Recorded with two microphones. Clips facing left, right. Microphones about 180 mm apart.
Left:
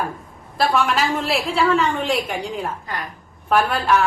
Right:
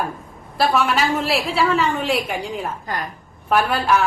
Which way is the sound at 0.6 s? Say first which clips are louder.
Right 1 dB; centre (ahead or behind).